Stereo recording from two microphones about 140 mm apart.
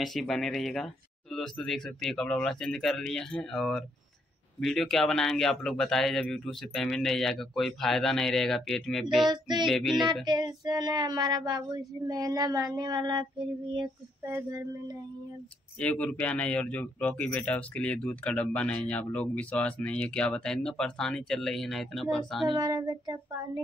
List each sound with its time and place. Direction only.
0.0 s speech: centre (ahead or behind)
9.3 s female singing: 30° right (ahead or behind)
9.7 s speech: centre (ahead or behind)
10.2 s child singing: 30° right (ahead or behind)
14.2 s child singing: 20° right (ahead or behind)
15.8 s speech: 10° left (ahead or behind)
22.5 s child singing: 25° right (ahead or behind)